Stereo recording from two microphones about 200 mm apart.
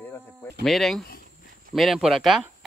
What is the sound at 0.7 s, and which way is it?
Speech, centre (ahead or behind).